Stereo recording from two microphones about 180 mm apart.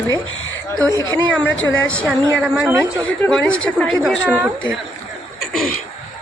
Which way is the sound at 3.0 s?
5° left (ahead or behind).